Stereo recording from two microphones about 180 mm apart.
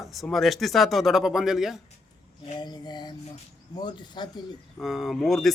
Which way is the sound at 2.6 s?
25° left (ahead or behind).